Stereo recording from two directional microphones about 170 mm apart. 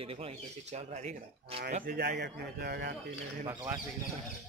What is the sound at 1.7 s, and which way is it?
Speech, 50° right (ahead or behind).